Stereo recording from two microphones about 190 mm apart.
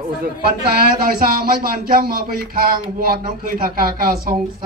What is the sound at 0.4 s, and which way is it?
Speech, 50° right (ahead or behind).